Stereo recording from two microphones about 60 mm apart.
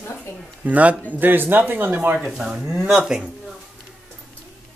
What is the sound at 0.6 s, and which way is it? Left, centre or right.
A man's voice, right.